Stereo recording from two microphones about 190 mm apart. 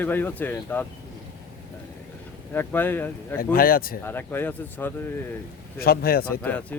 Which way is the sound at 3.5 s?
50° left (ahead or behind).